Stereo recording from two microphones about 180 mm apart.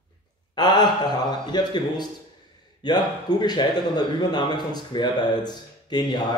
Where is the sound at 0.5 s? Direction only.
25° left (ahead or behind).